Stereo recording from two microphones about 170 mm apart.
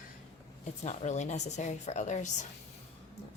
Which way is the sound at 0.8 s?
45° left (ahead or behind).